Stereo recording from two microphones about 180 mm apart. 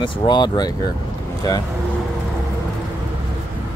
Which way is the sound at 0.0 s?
25° left (ahead or behind).